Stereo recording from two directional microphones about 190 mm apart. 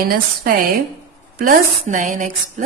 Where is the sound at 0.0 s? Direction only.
50° right (ahead or behind).